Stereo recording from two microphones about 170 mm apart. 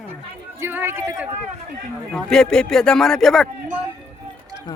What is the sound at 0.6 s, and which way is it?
Speech, 15° right (ahead or behind).